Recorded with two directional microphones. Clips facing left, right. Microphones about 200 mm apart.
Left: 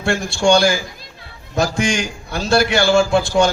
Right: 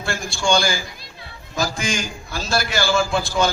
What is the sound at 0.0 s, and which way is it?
A man's voice, 65° left (ahead or behind).